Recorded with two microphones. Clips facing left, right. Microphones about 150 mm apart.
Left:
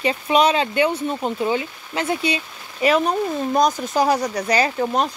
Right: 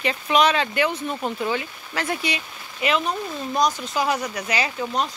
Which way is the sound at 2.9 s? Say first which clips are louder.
Left 5 dB; 40° left (ahead or behind).